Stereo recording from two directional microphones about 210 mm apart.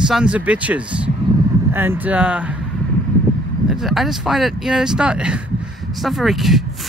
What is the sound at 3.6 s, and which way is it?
Speech, centre (ahead or behind).